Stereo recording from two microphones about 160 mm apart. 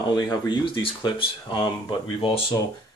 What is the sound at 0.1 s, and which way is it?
Speech, 25° left (ahead or behind).